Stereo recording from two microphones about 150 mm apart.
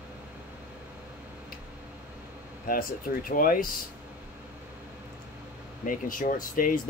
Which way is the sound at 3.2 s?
70° left (ahead or behind).